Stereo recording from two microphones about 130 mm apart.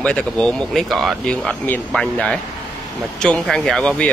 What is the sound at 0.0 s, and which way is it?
Speech, 10° left (ahead or behind).